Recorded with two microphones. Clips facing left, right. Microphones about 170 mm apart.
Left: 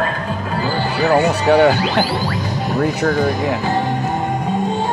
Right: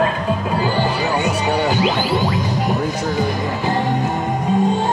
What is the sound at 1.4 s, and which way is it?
Speech, 90° left.